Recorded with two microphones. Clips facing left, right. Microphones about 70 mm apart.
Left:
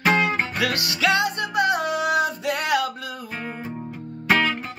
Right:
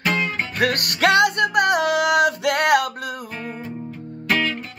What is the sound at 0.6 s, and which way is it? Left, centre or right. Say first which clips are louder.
Music: right 4 dB; right.